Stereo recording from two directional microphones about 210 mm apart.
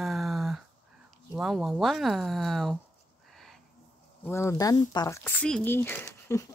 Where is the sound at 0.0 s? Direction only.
Centre (ahead or behind).